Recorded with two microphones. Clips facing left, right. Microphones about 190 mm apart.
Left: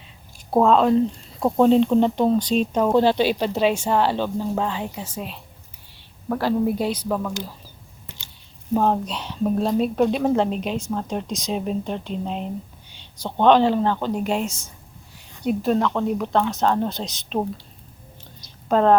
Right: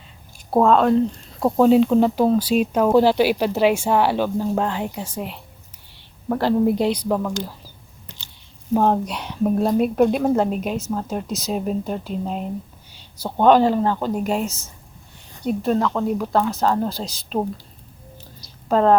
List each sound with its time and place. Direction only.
0.5 s speech: centre (ahead or behind); by 7.4 s 15° right (ahead or behind)
8.7 s speech: 15° right (ahead or behind)
15.4 s speech: centre (ahead or behind)
18.7 s speech: 5° right (ahead or behind)